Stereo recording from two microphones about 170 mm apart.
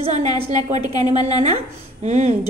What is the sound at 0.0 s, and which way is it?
Speech, 45° right (ahead or behind).